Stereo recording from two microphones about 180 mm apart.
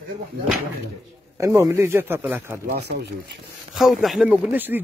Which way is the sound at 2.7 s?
65° right (ahead or behind).